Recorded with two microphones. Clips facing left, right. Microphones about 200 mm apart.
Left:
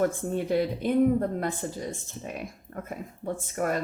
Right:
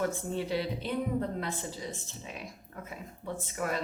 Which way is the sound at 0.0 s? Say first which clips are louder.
Left 5 dB; 50° left (ahead or behind).